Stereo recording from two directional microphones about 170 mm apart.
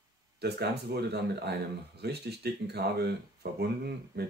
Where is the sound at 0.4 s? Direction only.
70° right (ahead or behind).